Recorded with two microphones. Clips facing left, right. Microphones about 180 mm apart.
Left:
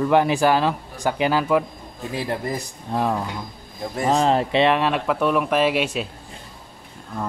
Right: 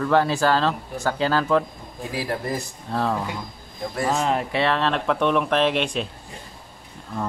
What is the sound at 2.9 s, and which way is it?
Speech, 15° left (ahead or behind).